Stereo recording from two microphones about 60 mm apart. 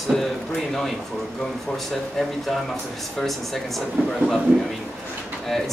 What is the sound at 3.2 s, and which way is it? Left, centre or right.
Speech, centre.